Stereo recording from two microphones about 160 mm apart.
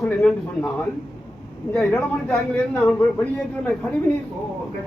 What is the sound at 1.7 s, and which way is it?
Speech, 10° left (ahead or behind).